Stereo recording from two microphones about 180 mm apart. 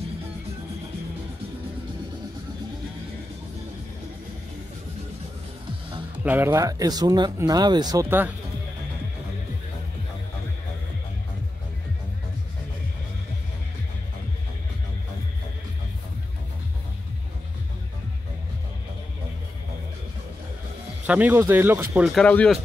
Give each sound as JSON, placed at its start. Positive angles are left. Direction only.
{"t": 6.2, "sound": "speech", "side_deg": -10}
{"t": 21.1, "sound": "speech", "side_deg": -10}
{"t": 21.9, "sound": "speech", "side_deg": 0}